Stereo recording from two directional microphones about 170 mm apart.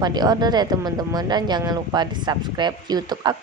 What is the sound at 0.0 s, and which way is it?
A woman's voice, 25° right (ahead or behind).